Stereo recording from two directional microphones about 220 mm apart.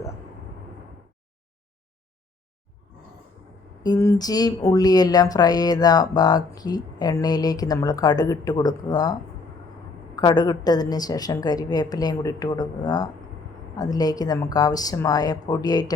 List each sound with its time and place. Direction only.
3.8 s speech: 15° left (ahead or behind)
10.2 s speech: 20° left (ahead or behind)